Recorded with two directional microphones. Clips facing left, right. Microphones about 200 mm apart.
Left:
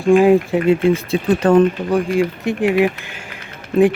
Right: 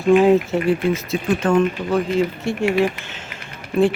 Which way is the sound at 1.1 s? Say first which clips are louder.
Left 4 dB; 35° left (ahead or behind).